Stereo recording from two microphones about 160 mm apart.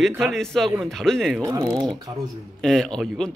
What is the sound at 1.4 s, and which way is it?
Speech, 25° right (ahead or behind).